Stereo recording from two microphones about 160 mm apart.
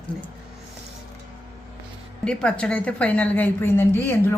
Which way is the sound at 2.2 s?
5° left (ahead or behind).